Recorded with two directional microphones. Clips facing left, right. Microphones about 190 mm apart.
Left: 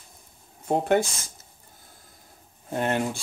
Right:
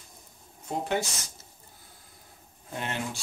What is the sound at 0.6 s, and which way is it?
Speech, 55° left (ahead or behind).